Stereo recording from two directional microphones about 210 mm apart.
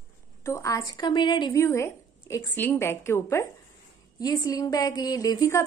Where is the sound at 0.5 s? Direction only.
15° left (ahead or behind).